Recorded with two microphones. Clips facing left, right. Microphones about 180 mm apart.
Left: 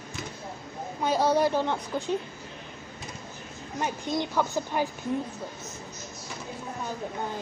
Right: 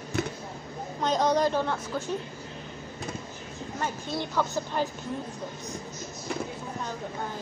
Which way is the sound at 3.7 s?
15° left (ahead or behind).